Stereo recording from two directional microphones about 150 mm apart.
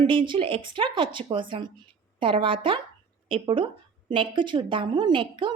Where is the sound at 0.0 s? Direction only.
35° right (ahead or behind).